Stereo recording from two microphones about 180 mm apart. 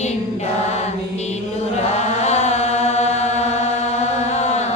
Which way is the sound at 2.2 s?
40° left (ahead or behind).